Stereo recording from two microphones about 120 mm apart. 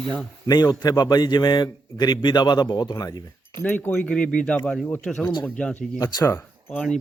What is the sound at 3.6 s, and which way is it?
Speech, 15° left (ahead or behind).